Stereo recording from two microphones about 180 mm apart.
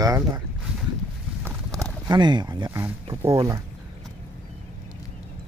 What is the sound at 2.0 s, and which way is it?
Speech, 25° right (ahead or behind).